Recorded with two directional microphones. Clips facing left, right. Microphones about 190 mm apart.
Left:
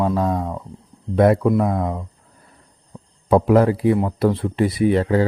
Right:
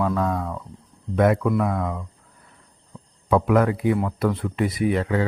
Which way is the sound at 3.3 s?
30° left (ahead or behind).